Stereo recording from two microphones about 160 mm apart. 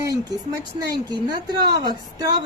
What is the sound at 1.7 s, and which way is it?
Speech, 25° right (ahead or behind).